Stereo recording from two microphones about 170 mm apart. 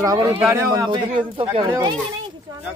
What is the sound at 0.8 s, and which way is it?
Speech, 30° right (ahead or behind).